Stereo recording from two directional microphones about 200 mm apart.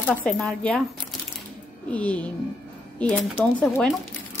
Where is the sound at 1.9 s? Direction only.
5° left (ahead or behind).